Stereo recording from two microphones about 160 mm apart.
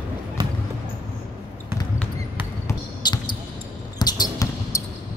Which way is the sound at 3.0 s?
25° left (ahead or behind).